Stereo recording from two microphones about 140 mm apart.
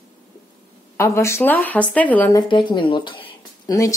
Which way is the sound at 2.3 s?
35° left (ahead or behind).